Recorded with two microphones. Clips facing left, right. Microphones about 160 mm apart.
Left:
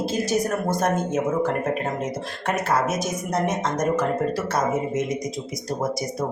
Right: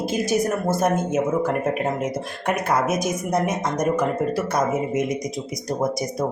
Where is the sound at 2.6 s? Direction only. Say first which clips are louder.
Right 2 dB; 10° right (ahead or behind).